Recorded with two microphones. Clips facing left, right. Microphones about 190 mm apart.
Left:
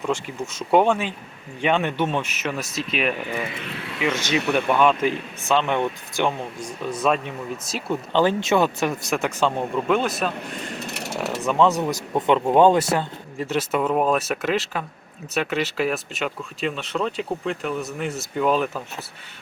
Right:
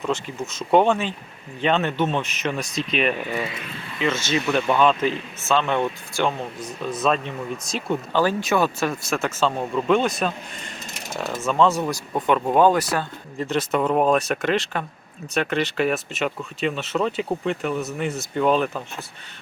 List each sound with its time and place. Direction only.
0.0 s speech: 10° left (ahead or behind)
3.5 s speech: 75° left (ahead or behind)
4.0 s speech: 15° left (ahead or behind)
8.1 s speech: 20° left (ahead or behind); by 10.3 s 5° left (ahead or behind)
10.8 s a sound: 70° left (ahead or behind)
11.4 s speech: 15° left (ahead or behind)
13.4 s speech: 10° left (ahead or behind)